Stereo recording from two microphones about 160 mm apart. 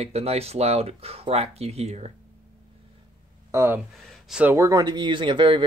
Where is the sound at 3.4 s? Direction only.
15° right (ahead or behind).